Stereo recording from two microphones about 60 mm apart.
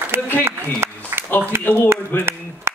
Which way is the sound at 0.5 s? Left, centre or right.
Right.